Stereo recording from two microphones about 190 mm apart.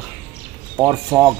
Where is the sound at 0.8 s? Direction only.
20° right (ahead or behind).